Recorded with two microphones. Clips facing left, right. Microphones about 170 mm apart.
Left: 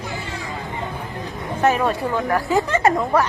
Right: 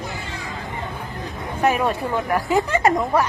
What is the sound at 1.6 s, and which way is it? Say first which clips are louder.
Speech: left 1 dB; 15° right (ahead or behind).